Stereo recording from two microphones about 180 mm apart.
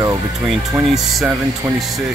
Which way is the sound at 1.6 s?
10° right (ahead or behind).